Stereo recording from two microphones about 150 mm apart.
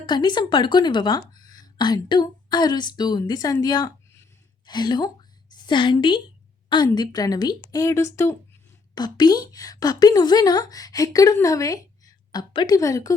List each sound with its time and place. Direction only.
0.0 s a woman's voice: 30° left (ahead or behind)